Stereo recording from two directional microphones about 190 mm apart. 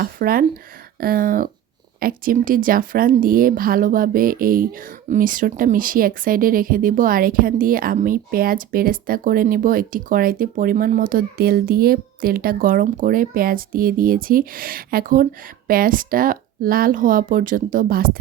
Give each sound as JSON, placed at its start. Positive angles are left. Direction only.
{"t": 0.0, "sound": "a woman's voice", "side_deg": -50}